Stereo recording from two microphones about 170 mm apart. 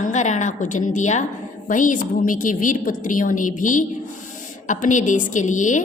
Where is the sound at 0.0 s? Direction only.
45° left (ahead or behind).